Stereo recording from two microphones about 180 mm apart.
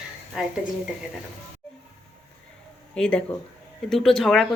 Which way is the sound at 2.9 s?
5° left (ahead or behind).